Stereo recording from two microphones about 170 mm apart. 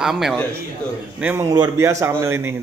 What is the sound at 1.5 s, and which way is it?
Speech, 20° right (ahead or behind).